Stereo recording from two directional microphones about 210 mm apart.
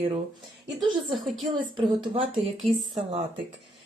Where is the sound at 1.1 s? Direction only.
Centre (ahead or behind).